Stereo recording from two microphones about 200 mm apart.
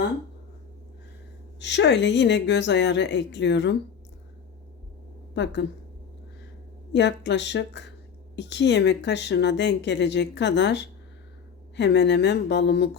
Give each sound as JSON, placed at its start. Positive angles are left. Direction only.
{"t": 1.5, "sound": "a woman's voice", "side_deg": 60}
{"t": 5.3, "sound": "a woman's voice", "side_deg": 60}
{"t": 6.9, "sound": "a woman's voice", "side_deg": 60}